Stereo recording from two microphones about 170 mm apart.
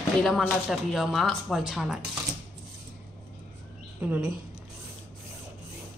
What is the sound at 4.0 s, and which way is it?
Speech, 10° right (ahead or behind).